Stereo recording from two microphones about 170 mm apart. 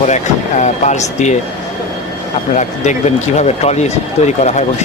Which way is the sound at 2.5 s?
45° left (ahead or behind).